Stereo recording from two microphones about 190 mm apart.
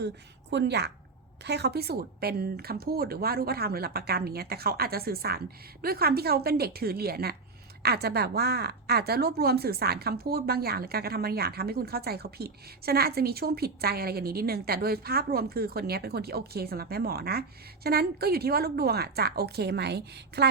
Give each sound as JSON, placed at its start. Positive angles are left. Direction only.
{"t": 0.5, "sound": "a woman's voice", "side_deg": -65}